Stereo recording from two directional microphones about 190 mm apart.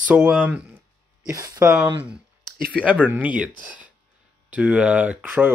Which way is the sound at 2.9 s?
10° right (ahead or behind).